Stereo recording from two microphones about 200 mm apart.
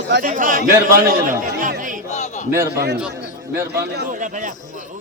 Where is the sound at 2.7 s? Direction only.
55° right (ahead or behind).